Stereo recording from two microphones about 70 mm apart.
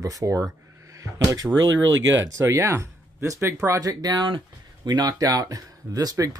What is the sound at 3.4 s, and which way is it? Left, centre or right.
Speech, right.